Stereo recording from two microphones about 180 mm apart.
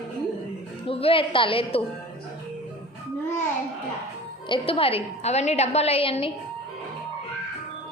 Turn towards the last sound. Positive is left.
turn(degrees=30)  # may be behind; listen again after turning